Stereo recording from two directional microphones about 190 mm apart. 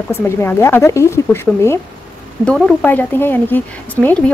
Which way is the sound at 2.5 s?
Centre (ahead or behind).